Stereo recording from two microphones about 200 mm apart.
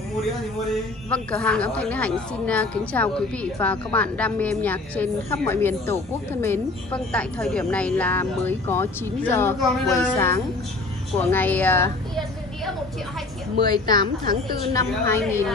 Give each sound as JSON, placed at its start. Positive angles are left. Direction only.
{"t": 1.1, "sound": "a woman's voice", "side_deg": 5}
{"t": 13.7, "sound": "a woman's voice", "side_deg": 20}